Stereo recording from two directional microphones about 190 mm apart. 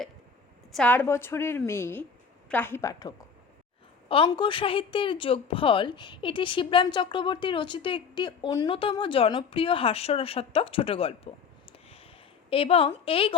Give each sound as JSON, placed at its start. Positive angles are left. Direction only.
{"t": 0.7, "sound": "a woman's voice", "side_deg": 5}
{"t": 12.5, "sound": "a woman's voice", "side_deg": 30}